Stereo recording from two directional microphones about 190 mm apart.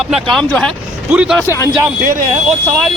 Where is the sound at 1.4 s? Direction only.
15° left (ahead or behind).